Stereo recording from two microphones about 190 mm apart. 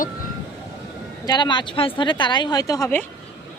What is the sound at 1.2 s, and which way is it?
Speech, 25° left (ahead or behind).